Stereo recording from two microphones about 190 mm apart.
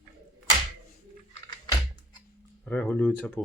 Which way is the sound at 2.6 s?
10° left (ahead or behind).